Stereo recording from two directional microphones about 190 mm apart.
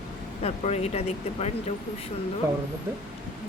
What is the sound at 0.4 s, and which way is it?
A woman's voice, 35° left (ahead or behind).